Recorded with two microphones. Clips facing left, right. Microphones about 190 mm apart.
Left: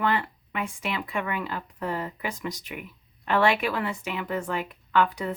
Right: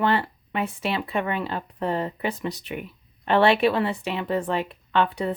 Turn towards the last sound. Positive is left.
turn(degrees=-30)  # may be behind; listen again after turning